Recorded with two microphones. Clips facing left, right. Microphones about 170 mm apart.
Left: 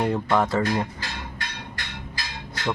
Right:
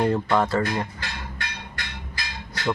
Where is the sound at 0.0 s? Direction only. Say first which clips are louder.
Right 1 dB; 10° left (ahead or behind).